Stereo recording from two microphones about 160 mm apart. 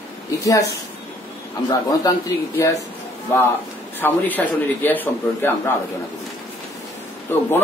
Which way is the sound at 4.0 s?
10° left (ahead or behind).